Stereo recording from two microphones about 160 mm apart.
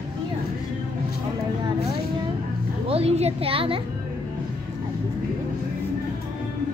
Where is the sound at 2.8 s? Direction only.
40° right (ahead or behind).